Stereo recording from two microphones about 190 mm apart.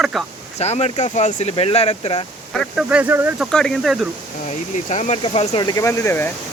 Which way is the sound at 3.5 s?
5° left (ahead or behind).